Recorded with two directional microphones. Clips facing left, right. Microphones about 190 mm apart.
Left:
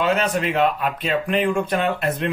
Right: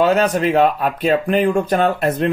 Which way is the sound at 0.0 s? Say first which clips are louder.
Right 5 dB; 40° right (ahead or behind).